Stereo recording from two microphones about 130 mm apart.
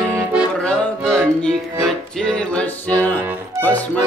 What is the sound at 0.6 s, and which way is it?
Music, 5° left (ahead or behind).